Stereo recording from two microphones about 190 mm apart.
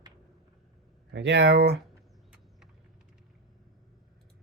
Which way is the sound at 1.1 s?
65° right (ahead or behind).